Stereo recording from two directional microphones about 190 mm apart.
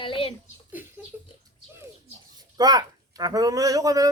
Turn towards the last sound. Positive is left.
turn(degrees=-20)  # may be behind; listen again after turning